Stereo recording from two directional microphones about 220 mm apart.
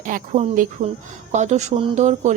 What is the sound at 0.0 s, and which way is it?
Speech, 35° right (ahead or behind).